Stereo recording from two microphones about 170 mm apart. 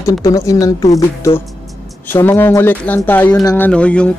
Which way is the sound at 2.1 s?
15° left (ahead or behind).